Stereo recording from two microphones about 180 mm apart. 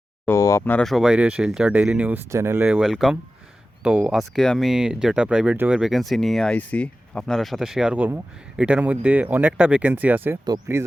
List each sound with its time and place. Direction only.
0.3 s speech: 15° left (ahead or behind); by 10.8 s 20° right (ahead or behind)